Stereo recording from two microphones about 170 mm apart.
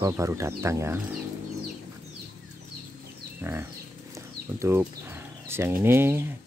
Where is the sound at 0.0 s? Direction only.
20° right (ahead or behind).